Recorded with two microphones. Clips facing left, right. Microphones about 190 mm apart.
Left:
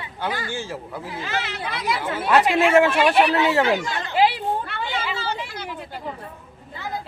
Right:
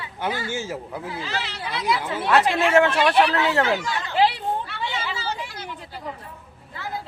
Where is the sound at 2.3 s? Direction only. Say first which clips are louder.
Left 2 dB; 5° left (ahead or behind).